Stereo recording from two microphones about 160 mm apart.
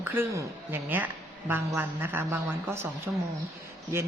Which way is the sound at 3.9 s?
15° right (ahead or behind).